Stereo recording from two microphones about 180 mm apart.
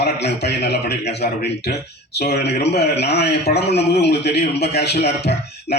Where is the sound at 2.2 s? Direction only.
65° left (ahead or behind).